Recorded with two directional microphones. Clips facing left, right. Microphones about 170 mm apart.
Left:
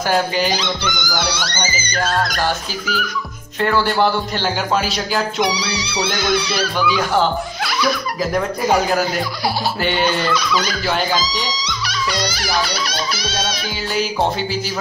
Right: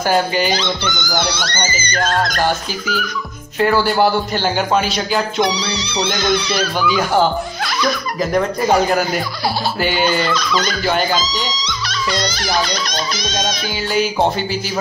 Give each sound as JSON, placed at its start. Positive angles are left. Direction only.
{"t": 0.5, "sound": "music", "side_deg": 10}
{"t": 3.5, "sound": "a man's voice", "side_deg": -5}
{"t": 10.3, "sound": "a man's voice", "side_deg": 10}
{"t": 11.5, "sound": "music", "side_deg": 10}